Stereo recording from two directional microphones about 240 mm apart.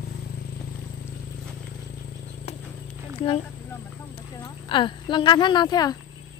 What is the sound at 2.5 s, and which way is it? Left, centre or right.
Clip-clop, left.